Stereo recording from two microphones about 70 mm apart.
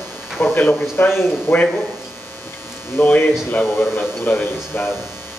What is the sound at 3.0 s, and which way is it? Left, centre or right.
Speech, left.